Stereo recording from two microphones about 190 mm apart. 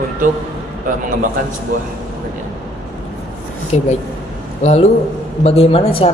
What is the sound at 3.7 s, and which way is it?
Speech, 35° left (ahead or behind).